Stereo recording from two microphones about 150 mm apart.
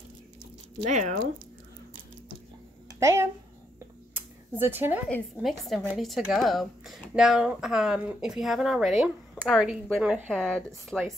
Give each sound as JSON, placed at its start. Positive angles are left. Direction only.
{"t": 0.8, "sound": "speech", "side_deg": -50}
{"t": 3.0, "sound": "a woman's voice", "side_deg": -20}
{"t": 4.1, "sound": "a sound", "side_deg": -15}
{"t": 5.4, "sound": "speech", "side_deg": 0}